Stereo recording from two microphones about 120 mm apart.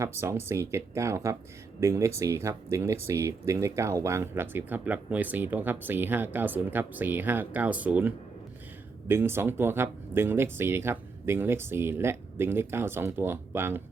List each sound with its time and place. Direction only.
0.0 s speech: 20° right (ahead or behind)